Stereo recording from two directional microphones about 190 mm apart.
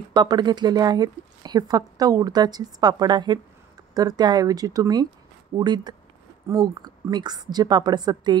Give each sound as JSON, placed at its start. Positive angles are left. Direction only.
{"t": 0.1, "sound": "speech", "side_deg": -25}